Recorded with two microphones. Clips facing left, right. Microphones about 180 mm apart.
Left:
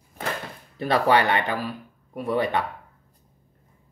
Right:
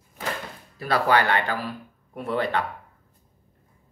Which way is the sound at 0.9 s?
20° left (ahead or behind).